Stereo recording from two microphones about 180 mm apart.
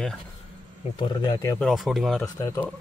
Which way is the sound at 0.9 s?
20° left (ahead or behind).